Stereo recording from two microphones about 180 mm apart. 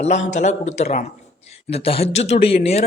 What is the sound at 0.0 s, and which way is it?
Speech, 40° left (ahead or behind).